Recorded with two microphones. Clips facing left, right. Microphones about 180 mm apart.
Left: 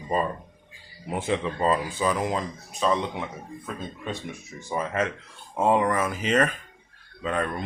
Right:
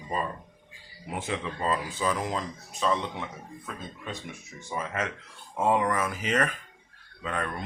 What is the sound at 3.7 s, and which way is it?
Speech, 30° left (ahead or behind).